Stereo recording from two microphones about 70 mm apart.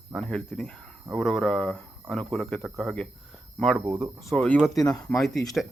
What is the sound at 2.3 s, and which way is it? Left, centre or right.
Speech, centre.